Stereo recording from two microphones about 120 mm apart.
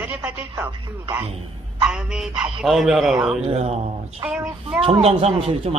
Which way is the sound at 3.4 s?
60° right (ahead or behind).